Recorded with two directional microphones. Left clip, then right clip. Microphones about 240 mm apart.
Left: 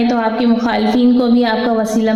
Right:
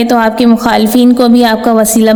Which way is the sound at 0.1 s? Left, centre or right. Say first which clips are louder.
Right 7 dB; right.